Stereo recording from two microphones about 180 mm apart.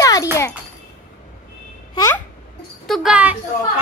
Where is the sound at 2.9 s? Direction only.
5° right (ahead or behind).